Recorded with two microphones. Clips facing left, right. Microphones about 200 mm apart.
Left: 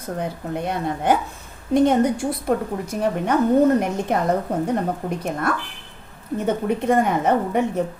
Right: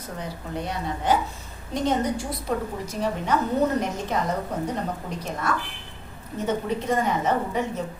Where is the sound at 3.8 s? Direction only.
55° left (ahead or behind).